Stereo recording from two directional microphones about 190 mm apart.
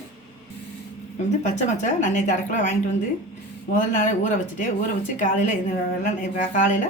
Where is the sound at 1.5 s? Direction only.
40° left (ahead or behind).